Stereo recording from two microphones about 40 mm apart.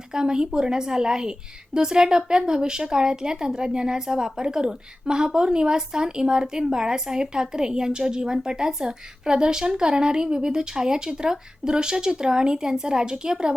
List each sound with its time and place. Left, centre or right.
0.1 s a woman's voice: centre